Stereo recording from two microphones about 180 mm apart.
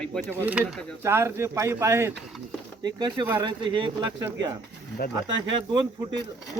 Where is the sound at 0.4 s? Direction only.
5° right (ahead or behind); by 5.8 s 25° right (ahead or behind).